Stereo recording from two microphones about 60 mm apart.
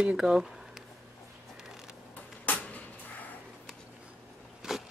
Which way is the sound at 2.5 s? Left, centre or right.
Left.